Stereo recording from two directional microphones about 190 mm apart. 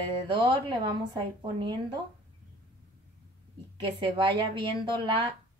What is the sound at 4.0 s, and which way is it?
A woman's voice, 25° right (ahead or behind).